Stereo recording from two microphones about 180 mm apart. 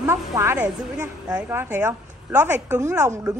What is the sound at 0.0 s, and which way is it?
A woman's voice, 15° right (ahead or behind).